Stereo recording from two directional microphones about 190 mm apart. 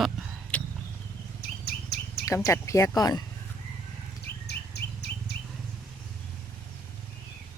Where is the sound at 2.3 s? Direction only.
15° left (ahead or behind).